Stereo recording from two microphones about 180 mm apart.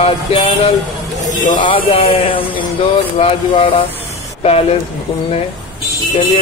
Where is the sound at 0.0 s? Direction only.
35° left (ahead or behind).